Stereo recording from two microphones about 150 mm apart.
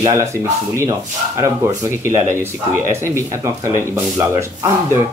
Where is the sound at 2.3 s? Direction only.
15° right (ahead or behind).